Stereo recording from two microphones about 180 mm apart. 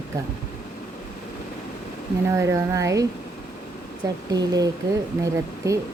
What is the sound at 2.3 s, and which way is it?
Speech, 15° right (ahead or behind).